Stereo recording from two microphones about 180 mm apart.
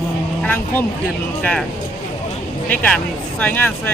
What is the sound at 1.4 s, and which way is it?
Speech, 5° left (ahead or behind).